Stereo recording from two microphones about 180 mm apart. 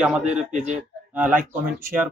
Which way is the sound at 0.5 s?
40° right (ahead or behind).